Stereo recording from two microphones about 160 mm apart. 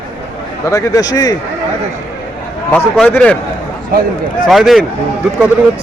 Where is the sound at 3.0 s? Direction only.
10° left (ahead or behind).